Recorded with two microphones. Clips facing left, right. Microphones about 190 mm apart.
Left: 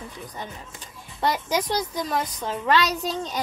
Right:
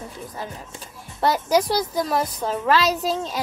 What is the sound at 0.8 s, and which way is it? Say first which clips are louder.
Speech: right 3 dB; 5° right (ahead or behind).